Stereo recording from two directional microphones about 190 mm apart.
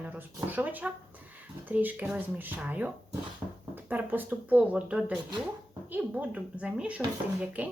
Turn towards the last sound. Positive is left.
turn(degrees=-10)  # may be behind; listen again after turning